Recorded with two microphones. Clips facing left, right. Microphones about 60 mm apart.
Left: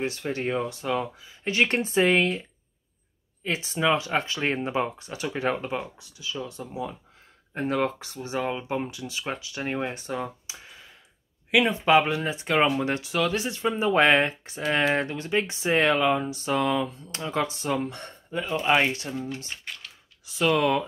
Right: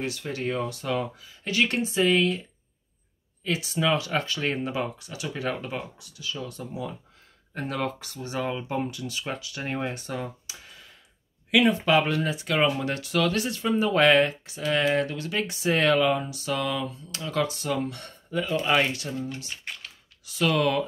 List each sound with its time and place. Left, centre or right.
0.0 s speech: left
3.4 s speech: left
9.6 s speech: centre